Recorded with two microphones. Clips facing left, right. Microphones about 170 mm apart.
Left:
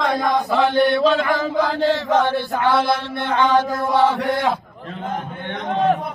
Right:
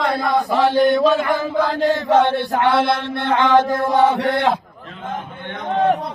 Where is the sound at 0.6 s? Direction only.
40° right (ahead or behind).